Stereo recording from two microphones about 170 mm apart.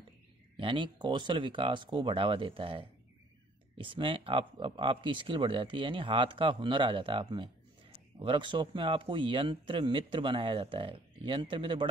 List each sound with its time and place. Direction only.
0.6 s a man's voice: 30° right (ahead or behind)